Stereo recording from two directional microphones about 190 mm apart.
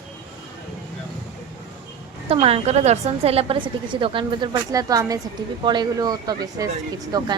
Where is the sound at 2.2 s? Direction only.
30° right (ahead or behind).